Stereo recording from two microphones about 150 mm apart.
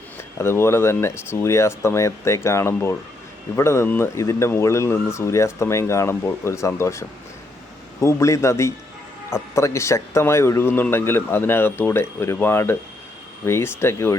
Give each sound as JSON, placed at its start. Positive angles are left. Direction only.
{"t": 0.3, "sound": "speech", "side_deg": 15}
{"t": 8.0, "sound": "speech", "side_deg": 20}